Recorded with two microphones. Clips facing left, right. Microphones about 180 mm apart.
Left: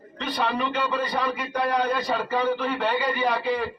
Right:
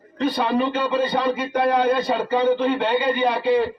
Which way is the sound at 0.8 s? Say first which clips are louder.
Right 5 dB; 25° right (ahead or behind).